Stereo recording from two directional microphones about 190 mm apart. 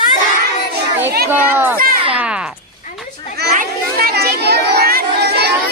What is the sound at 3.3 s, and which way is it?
Children playing, 55° right (ahead or behind).